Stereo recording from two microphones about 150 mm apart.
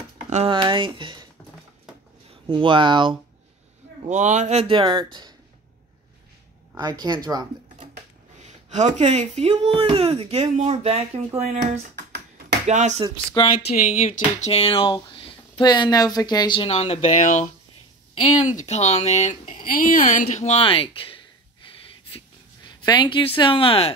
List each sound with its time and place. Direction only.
0.5 s speech: 35° right (ahead or behind)
2.4 s speech: 35° right (ahead or behind)
4.1 s speech: 50° right (ahead or behind); by 5.3 s 30° right (ahead or behind)
6.8 s a woman's voice: 25° right (ahead or behind)
8.4 s speech: 50° right (ahead or behind)
13.6 s speech: 65° left (ahead or behind)
14.5 s speech: 40° left (ahead or behind); by 17.5 s 55° left (ahead or behind)
18.7 s speech: 45° left (ahead or behind)
22.1 s a sound: 30° left (ahead or behind)